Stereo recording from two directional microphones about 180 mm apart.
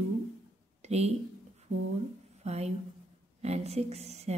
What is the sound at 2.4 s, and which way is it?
A woman's voice, 35° right (ahead or behind).